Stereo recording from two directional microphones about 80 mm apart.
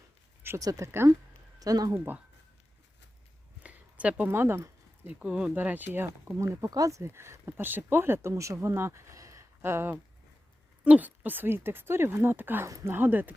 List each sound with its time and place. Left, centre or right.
0.6 s speech: right
0.9 s speech: right
1.5 s speech: right
3.6 s a sound: centre
4.3 s speech: right
5.0 s speech: centre
6.3 s speech: right
10.8 s speech: centre
12.6 s speech: right
13.0 s speech: right